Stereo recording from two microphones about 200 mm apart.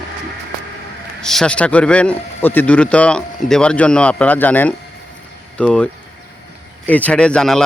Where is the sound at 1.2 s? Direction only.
Centre (ahead or behind).